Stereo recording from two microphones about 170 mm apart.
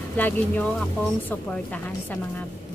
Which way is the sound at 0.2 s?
10° left (ahead or behind).